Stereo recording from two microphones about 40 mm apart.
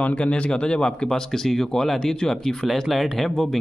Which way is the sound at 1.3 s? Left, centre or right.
Centre.